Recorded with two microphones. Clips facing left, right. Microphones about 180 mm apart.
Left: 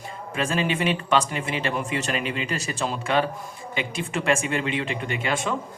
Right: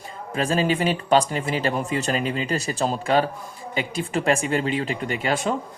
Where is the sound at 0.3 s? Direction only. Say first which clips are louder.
Right 3 dB; 35° right (ahead or behind).